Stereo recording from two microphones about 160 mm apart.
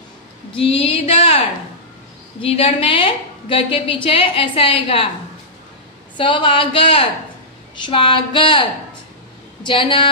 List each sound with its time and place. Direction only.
0.6 s a woman's voice: 35° left (ahead or behind)
2.4 s a woman's voice: 35° left (ahead or behind)
6.1 s a woman's voice: 30° left (ahead or behind)